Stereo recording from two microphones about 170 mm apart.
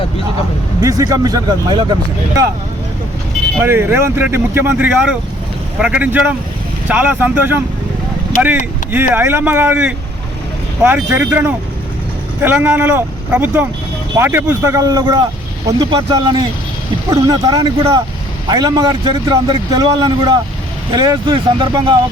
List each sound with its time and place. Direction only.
0.8 s a man's voice: 20° right (ahead or behind)
3.6 s speech: 15° right (ahead or behind)
9.1 s a man's voice: 15° right (ahead or behind); by 21.9 s 30° right (ahead or behind)